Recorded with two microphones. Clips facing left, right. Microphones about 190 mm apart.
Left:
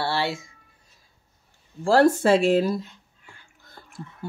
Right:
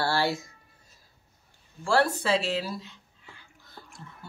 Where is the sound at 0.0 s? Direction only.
Centre (ahead or behind).